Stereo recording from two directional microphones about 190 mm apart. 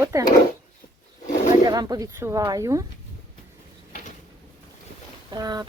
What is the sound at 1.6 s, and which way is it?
Speech, 20° right (ahead or behind).